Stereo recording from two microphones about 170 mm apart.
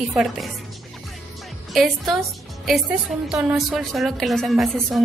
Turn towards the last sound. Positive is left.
turn(degrees=0)  # may be behind; listen again after turning